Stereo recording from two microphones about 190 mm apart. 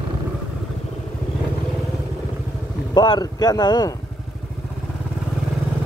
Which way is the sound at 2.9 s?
20° left (ahead or behind).